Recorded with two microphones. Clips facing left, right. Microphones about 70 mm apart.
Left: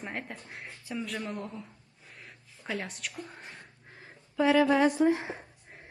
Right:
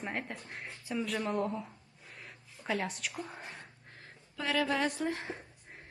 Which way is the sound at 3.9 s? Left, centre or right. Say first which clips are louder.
Left 13 dB; centre.